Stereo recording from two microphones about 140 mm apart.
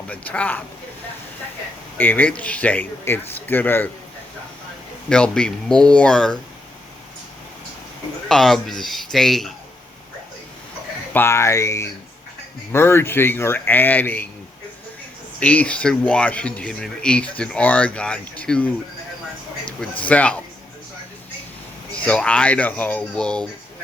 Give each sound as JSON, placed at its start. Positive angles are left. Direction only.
{"t": 0.1, "sound": "speech", "side_deg": 10}
{"t": 2.0, "sound": "speech", "side_deg": 10}
{"t": 5.0, "sound": "speech", "side_deg": 5}
{"t": 8.3, "sound": "speech", "side_deg": 0}
{"t": 11.1, "sound": "speech", "side_deg": 15}
{"t": 15.4, "sound": "speech", "side_deg": 10}
{"t": 20.1, "sound": "speech", "side_deg": 10}
{"t": 22.0, "sound": "speech", "side_deg": 10}